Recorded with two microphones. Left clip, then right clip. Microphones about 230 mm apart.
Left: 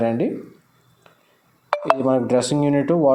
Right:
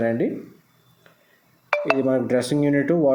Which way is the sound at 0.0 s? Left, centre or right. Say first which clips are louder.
Left 1 dB; centre.